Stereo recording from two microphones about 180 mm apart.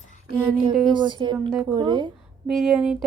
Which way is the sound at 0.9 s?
25° right (ahead or behind).